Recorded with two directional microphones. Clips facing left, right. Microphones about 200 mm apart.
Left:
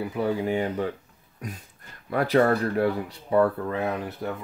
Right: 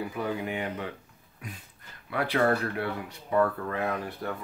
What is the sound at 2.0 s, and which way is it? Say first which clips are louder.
Speech: left 5 dB; 40° left (ahead or behind).